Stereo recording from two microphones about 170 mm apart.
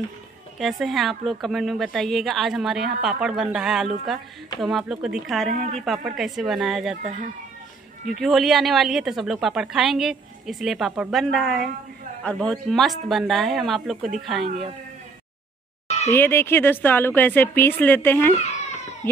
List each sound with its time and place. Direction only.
0.6 s speech: centre (ahead or behind)
5.5 s a woman's voice: 45° right (ahead or behind)
5.9 s speech: centre (ahead or behind)
8.2 s speech: centre (ahead or behind)
16.1 s speech: 15° left (ahead or behind)